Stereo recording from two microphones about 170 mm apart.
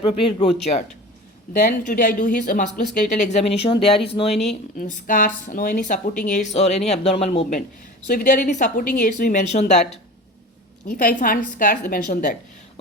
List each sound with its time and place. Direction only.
0.0 s speech: 30° left (ahead or behind)
1.5 s speech: 55° left (ahead or behind)
10.8 s a woman's voice: 55° left (ahead or behind)